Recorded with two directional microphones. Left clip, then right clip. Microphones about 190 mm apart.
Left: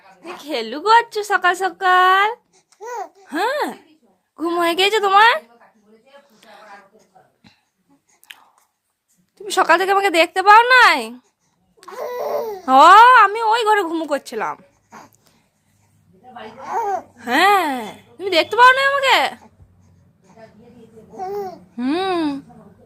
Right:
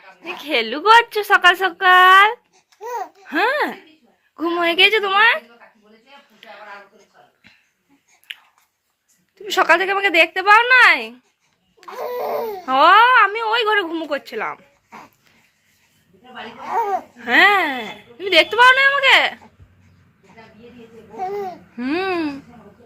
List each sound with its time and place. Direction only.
0.2 s speech: 10° left (ahead or behind)
4.4 s a woman's voice: 30° left (ahead or behind); by 5.4 s 45° left (ahead or behind)
6.4 s a sound: 30° left (ahead or behind)
8.3 s chewing: 35° left (ahead or behind)
9.4 s a woman's voice: 25° left (ahead or behind)
11.9 s speech: 5° left (ahead or behind)
12.6 s a woman's voice: 35° left (ahead or behind)
14.8 s dog: 5° left (ahead or behind)
16.6 s speech: 5° left (ahead or behind)
17.2 s a woman's voice: 25° left (ahead or behind)
21.2 s speech: 10° left (ahead or behind)
21.8 s a woman's voice: 25° left (ahead or behind)